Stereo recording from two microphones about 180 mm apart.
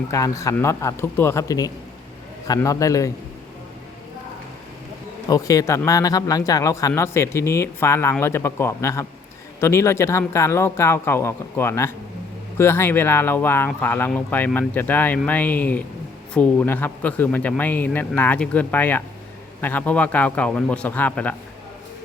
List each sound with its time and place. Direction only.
0.1 s a man's voice: 15° left (ahead or behind)
5.3 s speech: 20° left (ahead or behind)